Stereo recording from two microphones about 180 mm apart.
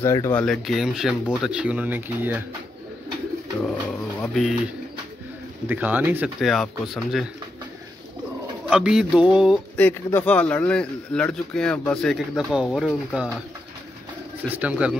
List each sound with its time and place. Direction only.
0.0 s speech: 15° left (ahead or behind); by 2.4 s 10° right (ahead or behind)
4.2 s speech: centre (ahead or behind)
5.7 s speech: 10° right (ahead or behind)
6.4 s speech: centre (ahead or behind)
8.6 s speech: 5° right (ahead or behind)
9.8 s speech: 10° left (ahead or behind)
14.5 s speech: 5° right (ahead or behind)